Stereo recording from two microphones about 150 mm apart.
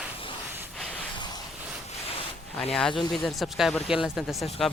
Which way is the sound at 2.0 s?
40° left (ahead or behind).